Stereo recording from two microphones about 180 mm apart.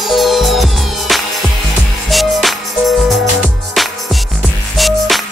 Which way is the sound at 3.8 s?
Centre (ahead or behind).